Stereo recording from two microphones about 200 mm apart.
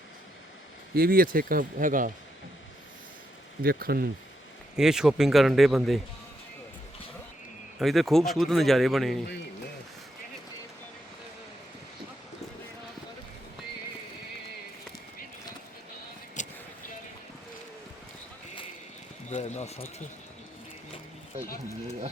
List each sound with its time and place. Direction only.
0.9 s speech: 45° right (ahead or behind)
3.6 s speech: 50° right (ahead or behind)
4.8 s speech: 5° right (ahead or behind)
7.8 s speech: centre (ahead or behind)
16.4 s vehicle: 40° left (ahead or behind)
19.3 s a sound: 35° left (ahead or behind)